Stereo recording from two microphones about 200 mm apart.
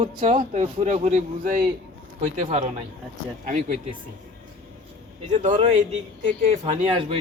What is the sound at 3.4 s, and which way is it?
Speech, 40° right (ahead or behind).